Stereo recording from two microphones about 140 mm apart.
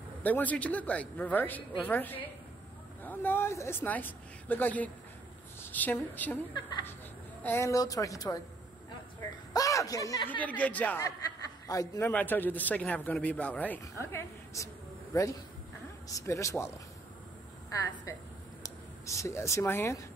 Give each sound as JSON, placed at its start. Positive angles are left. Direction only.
{"t": 0.2, "sound": "a man's voice", "side_deg": 10}
{"t": 7.4, "sound": "a woman's voice", "side_deg": 20}
{"t": 9.5, "sound": "a woman's voice", "side_deg": 25}
{"t": 10.4, "sound": "a man's voice", "side_deg": 10}
{"t": 11.6, "sound": "a woman's voice", "side_deg": 25}
{"t": 12.1, "sound": "a man's voice", "side_deg": 10}
{"t": 16.1, "sound": "a woman's voice", "side_deg": 25}